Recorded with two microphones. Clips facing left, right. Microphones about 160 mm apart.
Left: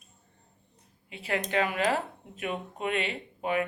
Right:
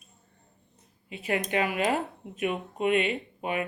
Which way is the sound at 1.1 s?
20° right (ahead or behind).